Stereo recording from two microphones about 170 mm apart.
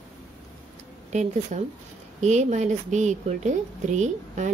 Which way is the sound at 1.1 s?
45° right (ahead or behind).